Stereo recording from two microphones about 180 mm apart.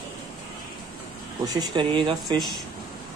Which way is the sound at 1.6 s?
25° right (ahead or behind).